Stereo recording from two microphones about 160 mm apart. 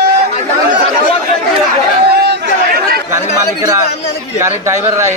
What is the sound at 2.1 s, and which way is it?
Chatter, 80° right.